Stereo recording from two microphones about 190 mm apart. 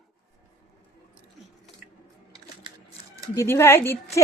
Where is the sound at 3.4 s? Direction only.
15° left (ahead or behind).